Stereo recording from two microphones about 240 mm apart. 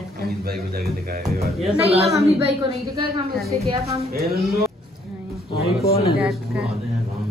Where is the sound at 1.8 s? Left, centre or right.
Right.